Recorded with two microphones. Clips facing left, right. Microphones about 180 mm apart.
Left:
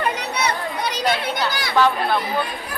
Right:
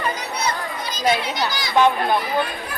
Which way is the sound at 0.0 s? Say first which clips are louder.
Left 2 dB; 65° left (ahead or behind).